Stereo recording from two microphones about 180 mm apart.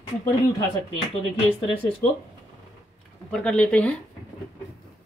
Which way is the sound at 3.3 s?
5° left (ahead or behind).